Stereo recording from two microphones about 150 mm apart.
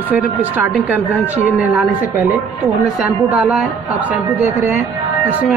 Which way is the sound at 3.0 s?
5° right (ahead or behind).